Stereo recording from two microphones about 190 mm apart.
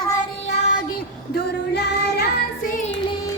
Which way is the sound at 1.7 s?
55° left (ahead or behind).